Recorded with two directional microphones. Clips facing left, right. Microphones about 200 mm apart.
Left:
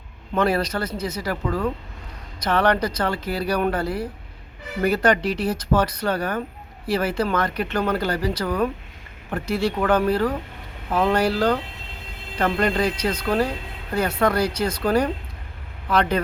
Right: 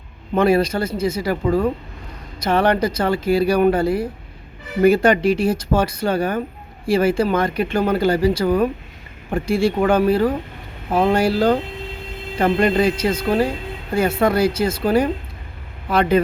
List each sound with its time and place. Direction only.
0.3 s speech: 10° right (ahead or behind)
1.5 s speech: 25° right (ahead or behind)
2.4 s speech: 10° right (ahead or behind)